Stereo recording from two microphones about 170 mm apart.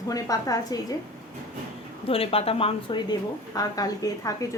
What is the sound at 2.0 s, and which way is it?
A woman's voice, 35° left (ahead or behind).